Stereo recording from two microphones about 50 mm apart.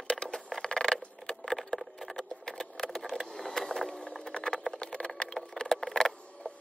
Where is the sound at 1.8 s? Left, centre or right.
Centre.